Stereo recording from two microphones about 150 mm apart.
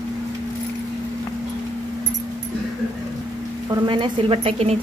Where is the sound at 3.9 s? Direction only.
35° right (ahead or behind).